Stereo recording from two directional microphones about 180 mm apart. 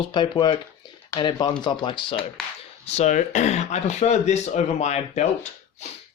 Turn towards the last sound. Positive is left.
turn(degrees=40)  # may be behind; listen again after turning